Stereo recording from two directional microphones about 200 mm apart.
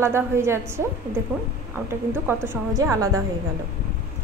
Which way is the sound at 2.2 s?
15° right (ahead or behind).